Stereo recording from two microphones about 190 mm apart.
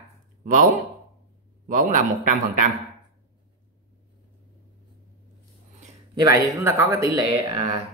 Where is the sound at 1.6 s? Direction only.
45° right (ahead or behind).